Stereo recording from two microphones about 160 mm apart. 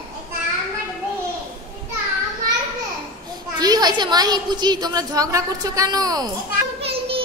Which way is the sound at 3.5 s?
25° right (ahead or behind).